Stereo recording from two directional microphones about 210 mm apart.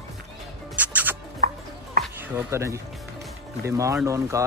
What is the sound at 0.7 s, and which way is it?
Music, 5° right (ahead or behind).